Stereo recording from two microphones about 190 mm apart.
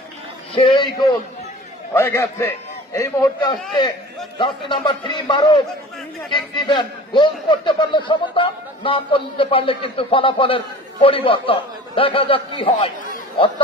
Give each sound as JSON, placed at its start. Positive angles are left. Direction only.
{"t": 0.6, "sound": "a man's voice", "side_deg": 20}
{"t": 4.4, "sound": "a man's voice", "side_deg": 25}